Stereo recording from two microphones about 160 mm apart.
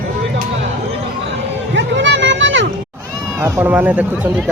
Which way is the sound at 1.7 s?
90° right.